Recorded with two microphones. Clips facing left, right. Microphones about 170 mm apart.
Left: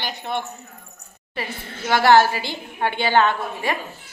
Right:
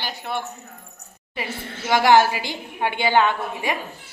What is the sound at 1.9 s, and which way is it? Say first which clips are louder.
A woman's voice: left 1 dB; 15° right (ahead or behind).